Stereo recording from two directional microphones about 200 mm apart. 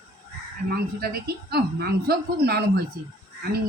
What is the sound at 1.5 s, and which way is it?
A woman's voice, 50° right (ahead or behind).